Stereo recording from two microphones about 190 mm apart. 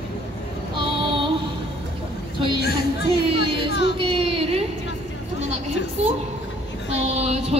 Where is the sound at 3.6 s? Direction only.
60° left (ahead or behind).